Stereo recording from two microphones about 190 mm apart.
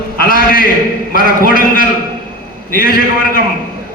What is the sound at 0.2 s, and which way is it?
A man's voice, 50° left (ahead or behind).